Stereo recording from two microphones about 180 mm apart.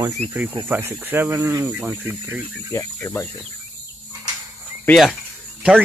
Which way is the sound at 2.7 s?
15° left (ahead or behind).